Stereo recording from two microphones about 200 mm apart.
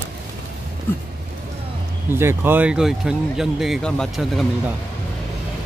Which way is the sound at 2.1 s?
10° right (ahead or behind).